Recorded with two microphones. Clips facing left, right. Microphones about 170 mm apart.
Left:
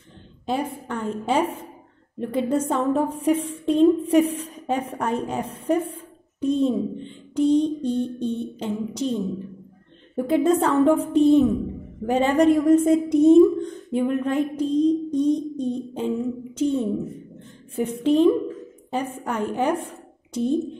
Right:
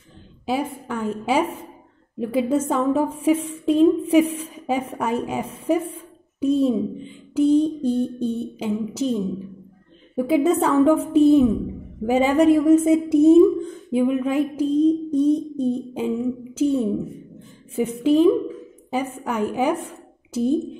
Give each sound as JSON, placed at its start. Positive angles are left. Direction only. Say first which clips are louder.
{"t": 0.5, "sound": "a woman's voice", "louder": "right 1 dB", "side_deg": -5}
{"t": 18.0, "sound": "a woman's voice", "louder": "right 1 dB", "side_deg": -5}